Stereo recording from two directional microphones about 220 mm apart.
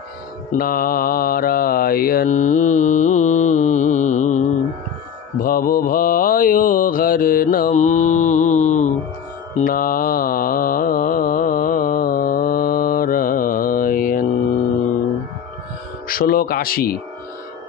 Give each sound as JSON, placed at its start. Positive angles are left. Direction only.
{"t": 0.6, "sound": "mantra", "side_deg": 40}
{"t": 16.1, "sound": "speech", "side_deg": 40}